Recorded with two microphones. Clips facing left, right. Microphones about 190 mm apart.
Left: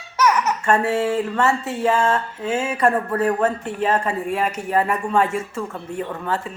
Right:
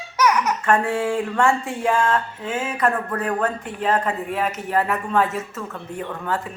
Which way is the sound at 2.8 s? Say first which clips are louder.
Left 3 dB; 25° left (ahead or behind).